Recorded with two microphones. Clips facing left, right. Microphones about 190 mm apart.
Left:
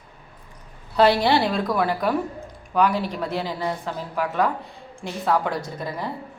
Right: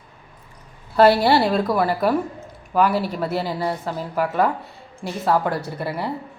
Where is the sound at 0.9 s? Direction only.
5° right (ahead or behind).